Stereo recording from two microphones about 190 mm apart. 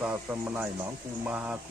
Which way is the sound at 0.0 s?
10° right (ahead or behind).